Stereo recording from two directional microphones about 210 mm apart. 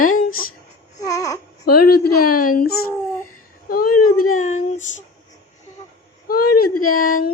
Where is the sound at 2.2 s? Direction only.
90° left.